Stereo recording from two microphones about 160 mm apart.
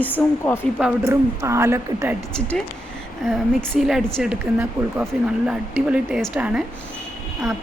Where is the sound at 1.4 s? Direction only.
20° right (ahead or behind).